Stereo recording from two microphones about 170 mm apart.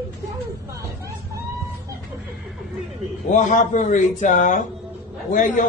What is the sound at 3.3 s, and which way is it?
A man's voice, 45° left (ahead or behind).